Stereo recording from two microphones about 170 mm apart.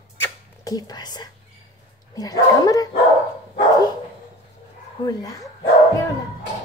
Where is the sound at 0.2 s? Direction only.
20° left (ahead or behind).